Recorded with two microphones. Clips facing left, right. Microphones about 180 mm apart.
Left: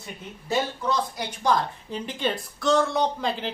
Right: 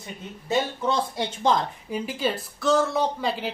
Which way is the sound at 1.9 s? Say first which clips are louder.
Right 2 dB; 5° right (ahead or behind).